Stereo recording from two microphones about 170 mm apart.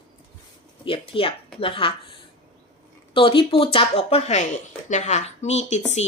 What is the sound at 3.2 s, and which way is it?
Speech, 30° left (ahead or behind).